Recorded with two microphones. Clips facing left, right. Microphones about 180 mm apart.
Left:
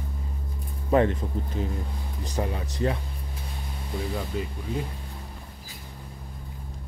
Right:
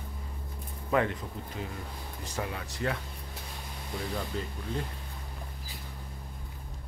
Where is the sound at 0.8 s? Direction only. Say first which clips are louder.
Left 6 dB; 30° left (ahead or behind).